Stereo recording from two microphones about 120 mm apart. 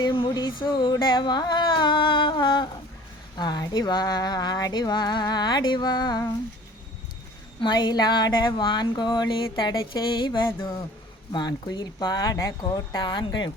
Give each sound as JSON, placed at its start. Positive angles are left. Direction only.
{"t": 0.0, "sound": "speech", "side_deg": 40}
{"t": 0.8, "sound": "a sound", "side_deg": 40}
{"t": 3.3, "sound": "speech", "side_deg": 35}
{"t": 7.6, "sound": "speech", "side_deg": 35}